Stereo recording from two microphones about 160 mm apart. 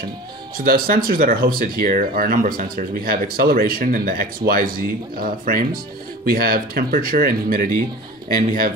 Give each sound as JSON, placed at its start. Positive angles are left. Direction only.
{"t": 0.7, "sound": "speech", "side_deg": -65}